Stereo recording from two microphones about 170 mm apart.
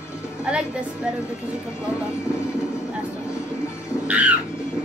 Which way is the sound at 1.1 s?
5° right (ahead or behind).